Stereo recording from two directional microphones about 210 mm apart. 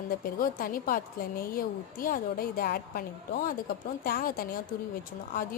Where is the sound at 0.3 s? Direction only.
45° left (ahead or behind).